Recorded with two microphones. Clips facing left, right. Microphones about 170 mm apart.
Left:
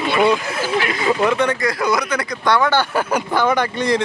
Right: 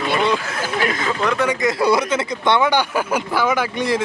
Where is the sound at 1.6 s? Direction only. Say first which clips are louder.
Right 2 dB; 30° right (ahead or behind).